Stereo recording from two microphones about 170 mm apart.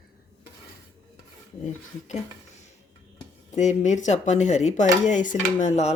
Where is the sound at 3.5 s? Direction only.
45° left (ahead or behind).